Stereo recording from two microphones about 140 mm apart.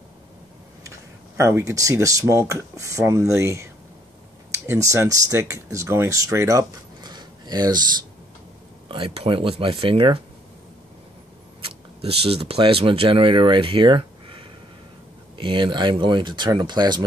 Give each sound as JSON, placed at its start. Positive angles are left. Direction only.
{"t": 0.8, "sound": "speech", "side_deg": -20}
{"t": 8.8, "sound": "speech", "side_deg": -40}
{"t": 11.6, "sound": "speech", "side_deg": -45}